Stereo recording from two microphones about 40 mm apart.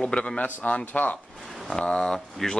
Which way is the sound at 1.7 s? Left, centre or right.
Left.